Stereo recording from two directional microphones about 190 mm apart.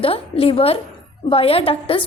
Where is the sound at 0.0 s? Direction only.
30° left (ahead or behind).